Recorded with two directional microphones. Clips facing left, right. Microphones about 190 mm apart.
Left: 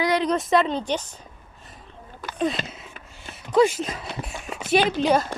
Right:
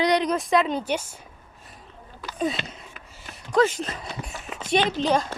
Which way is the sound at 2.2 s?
45° left (ahead or behind).